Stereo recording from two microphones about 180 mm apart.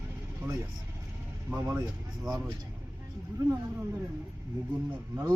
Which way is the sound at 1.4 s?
15° right (ahead or behind).